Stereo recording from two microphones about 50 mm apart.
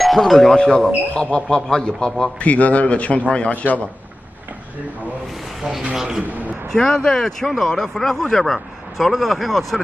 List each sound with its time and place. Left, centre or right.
0.0 s speech: centre
0.6 s speech: centre
2.4 s a man's voice: left
5.6 s speech: centre
6.7 s a man's voice: centre